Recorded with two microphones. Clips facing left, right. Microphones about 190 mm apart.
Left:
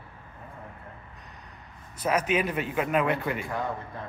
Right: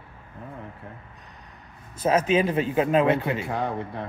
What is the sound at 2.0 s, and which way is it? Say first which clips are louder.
Speech: right 5 dB; 30° right (ahead or behind).